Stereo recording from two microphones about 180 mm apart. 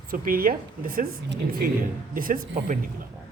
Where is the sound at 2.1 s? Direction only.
50° right (ahead or behind).